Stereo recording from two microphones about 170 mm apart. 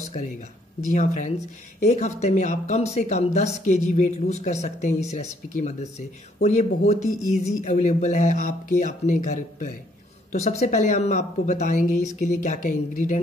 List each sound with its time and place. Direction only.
0.9 s speech: 45° left (ahead or behind)